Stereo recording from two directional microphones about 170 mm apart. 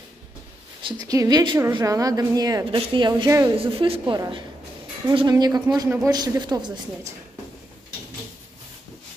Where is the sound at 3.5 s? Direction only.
35° right (ahead or behind); by 6.1 s 10° right (ahead or behind).